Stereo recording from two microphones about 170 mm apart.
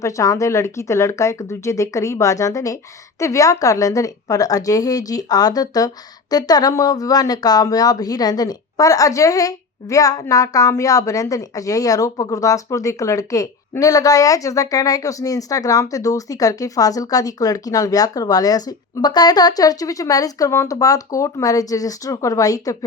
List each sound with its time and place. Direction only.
0.0 s speech: 20° left (ahead or behind)